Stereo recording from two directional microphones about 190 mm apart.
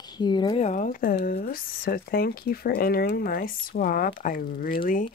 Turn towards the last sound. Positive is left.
turn(degrees=45)  # may be behind; listen again after turning